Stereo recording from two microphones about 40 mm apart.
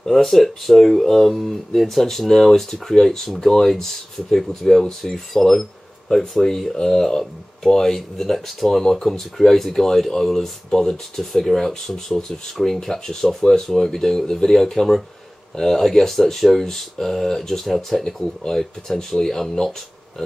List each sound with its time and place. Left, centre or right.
0.0 s speech: centre